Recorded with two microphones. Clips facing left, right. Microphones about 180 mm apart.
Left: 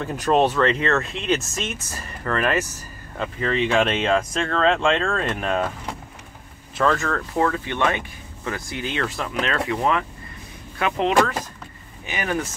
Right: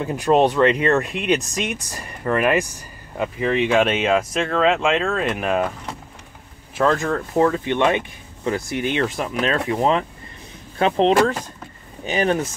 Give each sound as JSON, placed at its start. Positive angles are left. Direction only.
{"t": 0.0, "sound": "speech", "side_deg": -10}
{"t": 6.7, "sound": "speech", "side_deg": -15}